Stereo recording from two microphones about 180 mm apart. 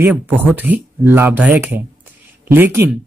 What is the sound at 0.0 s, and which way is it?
Speech, 10° right (ahead or behind).